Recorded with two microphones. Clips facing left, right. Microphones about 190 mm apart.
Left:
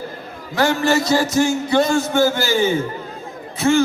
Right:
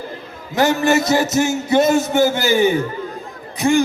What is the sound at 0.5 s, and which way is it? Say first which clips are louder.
A man's voice: right 2 dB; 20° right (ahead or behind).